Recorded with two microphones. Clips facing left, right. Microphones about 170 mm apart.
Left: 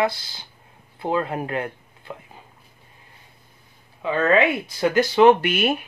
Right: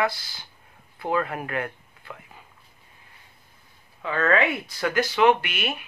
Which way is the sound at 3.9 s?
20° left (ahead or behind).